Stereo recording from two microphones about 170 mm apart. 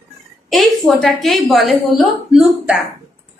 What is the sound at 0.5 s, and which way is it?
A woman's voice, centre (ahead or behind).